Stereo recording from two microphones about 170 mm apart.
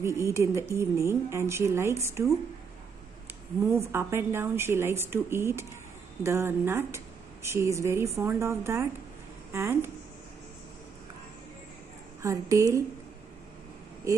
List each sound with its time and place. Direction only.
0.0 s a woman's voice: 15° right (ahead or behind)
3.7 s a woman's voice: 15° right (ahead or behind)
12.2 s a woman's voice: 20° right (ahead or behind)
14.1 s speech: 20° right (ahead or behind)